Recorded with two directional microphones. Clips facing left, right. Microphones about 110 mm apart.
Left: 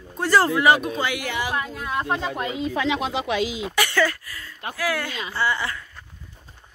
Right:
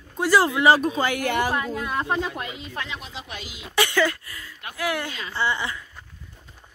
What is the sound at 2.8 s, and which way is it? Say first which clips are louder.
Speech: left 12 dB; 90° left.